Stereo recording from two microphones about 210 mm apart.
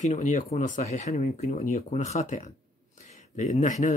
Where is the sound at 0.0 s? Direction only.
35° left (ahead or behind).